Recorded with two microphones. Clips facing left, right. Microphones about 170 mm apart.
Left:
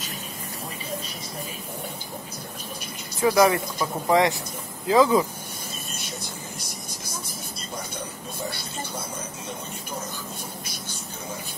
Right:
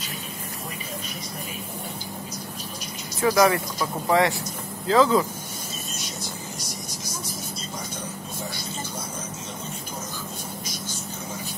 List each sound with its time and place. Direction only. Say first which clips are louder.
3.2 s speech: left 1 dB; 15° left (ahead or behind)